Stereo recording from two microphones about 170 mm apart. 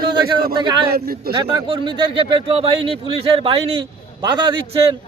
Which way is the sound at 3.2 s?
35° right (ahead or behind).